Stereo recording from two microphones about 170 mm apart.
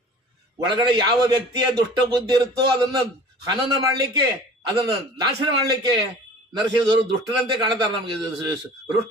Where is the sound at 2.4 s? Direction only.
25° right (ahead or behind).